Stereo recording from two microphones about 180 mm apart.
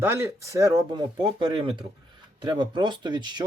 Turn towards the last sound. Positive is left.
turn(degrees=-25)  # may be behind; listen again after turning